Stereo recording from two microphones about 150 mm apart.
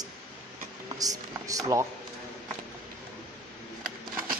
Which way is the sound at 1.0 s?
25° right (ahead or behind).